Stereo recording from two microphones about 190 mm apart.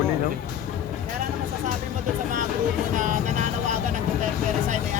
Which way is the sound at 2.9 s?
40° right (ahead or behind).